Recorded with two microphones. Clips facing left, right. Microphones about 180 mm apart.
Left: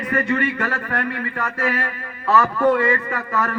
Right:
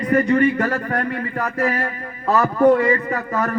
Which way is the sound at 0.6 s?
40° right (ahead or behind).